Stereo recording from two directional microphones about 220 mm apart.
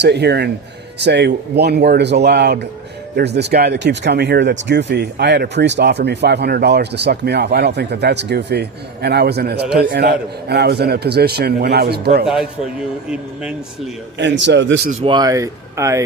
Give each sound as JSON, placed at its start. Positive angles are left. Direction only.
{"t": 0.0, "sound": "speech", "side_deg": -50}
{"t": 12.2, "sound": "a man's voice", "side_deg": -5}
{"t": 14.2, "sound": "speech", "side_deg": -55}
{"t": 15.0, "sound": "speech", "side_deg": -20}